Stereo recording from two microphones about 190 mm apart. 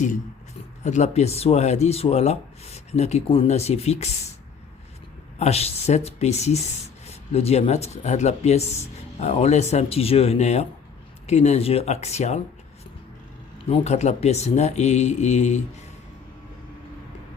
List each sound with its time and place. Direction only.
0.9 s speech: 35° left (ahead or behind)
5.4 s speech: 35° left (ahead or behind)
13.7 s speech: 35° left (ahead or behind)